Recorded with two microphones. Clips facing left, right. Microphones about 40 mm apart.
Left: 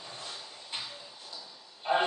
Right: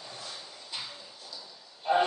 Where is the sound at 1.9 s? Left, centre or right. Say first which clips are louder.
Right 2 dB; left.